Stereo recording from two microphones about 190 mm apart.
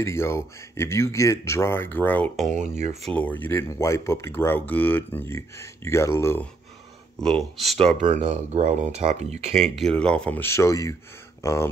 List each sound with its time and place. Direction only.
0.0 s speech: 15° left (ahead or behind)
7.5 s speech: centre (ahead or behind)
8.0 s speech: 40° right (ahead or behind)
9.8 s speech: 5° left (ahead or behind)